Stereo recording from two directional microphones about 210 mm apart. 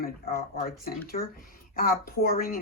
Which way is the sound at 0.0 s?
45° left (ahead or behind).